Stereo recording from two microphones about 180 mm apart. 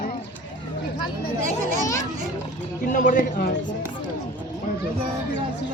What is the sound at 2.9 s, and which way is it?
Speech, 45° left (ahead or behind).